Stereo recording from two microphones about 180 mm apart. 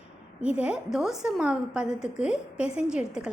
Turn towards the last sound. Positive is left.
turn(degrees=-5)  # may be behind; listen again after turning